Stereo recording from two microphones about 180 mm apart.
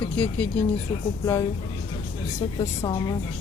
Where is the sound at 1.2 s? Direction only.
20° left (ahead or behind).